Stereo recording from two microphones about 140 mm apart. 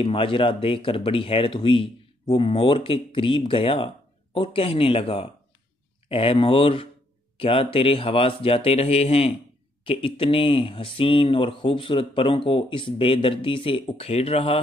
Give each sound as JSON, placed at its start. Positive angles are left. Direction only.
{"t": 0.0, "sound": "speech", "side_deg": 40}